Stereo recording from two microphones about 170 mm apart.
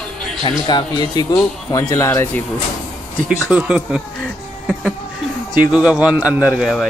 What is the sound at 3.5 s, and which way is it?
Speech, 5° right (ahead or behind).